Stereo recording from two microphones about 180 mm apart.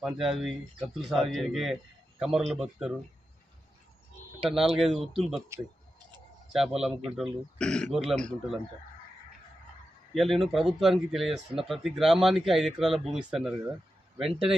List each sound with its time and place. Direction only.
0.0 s speech: centre (ahead or behind)
4.4 s speech: centre (ahead or behind)
5.5 s speech: 15° right (ahead or behind)
6.5 s speech: centre (ahead or behind)
10.2 s speech: centre (ahead or behind)